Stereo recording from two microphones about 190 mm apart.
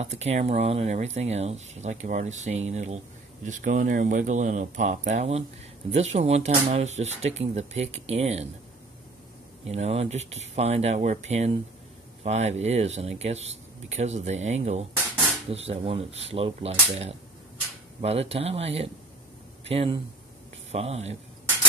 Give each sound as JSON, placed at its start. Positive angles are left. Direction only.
{"t": 0.0, "sound": "speech", "side_deg": -35}
{"t": 9.7, "sound": "speech", "side_deg": -35}